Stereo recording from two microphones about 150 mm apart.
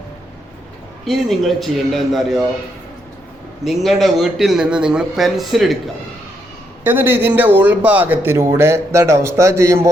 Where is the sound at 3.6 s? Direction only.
Centre (ahead or behind).